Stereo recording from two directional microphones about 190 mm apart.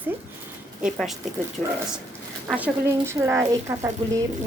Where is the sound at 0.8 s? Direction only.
Centre (ahead or behind).